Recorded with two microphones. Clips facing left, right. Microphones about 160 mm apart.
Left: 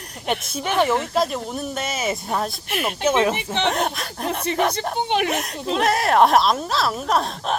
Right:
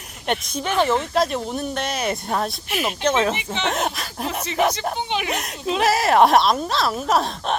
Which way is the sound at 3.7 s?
Centre (ahead or behind).